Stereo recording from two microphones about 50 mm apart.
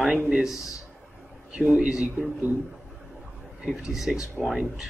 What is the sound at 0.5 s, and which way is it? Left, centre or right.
Speech, left.